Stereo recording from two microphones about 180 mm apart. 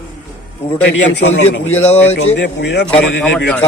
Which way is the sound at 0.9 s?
90° left.